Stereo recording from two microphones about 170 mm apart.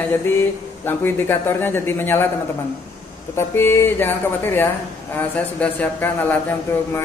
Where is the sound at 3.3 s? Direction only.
15° left (ahead or behind).